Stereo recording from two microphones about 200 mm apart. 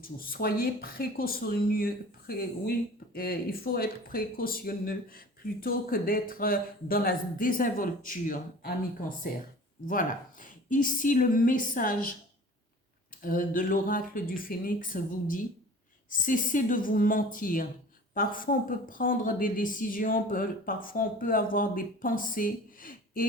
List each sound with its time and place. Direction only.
0.0 s speech: 45° left (ahead or behind)
9.8 s speech: 45° left (ahead or behind)
13.2 s speech: 40° left (ahead or behind)
16.0 s speech: 40° left (ahead or behind)